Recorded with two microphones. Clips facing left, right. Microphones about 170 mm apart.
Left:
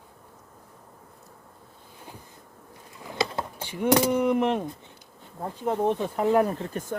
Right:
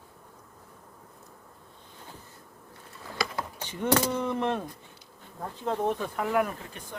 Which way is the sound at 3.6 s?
15° left (ahead or behind).